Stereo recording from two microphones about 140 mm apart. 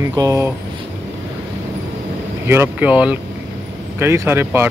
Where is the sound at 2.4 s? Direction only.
15° right (ahead or behind).